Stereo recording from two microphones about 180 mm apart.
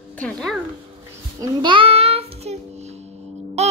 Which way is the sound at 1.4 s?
25° right (ahead or behind).